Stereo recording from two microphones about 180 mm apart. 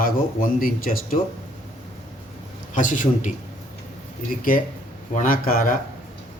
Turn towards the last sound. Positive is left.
turn(degrees=50)  # may be behind; listen again after turning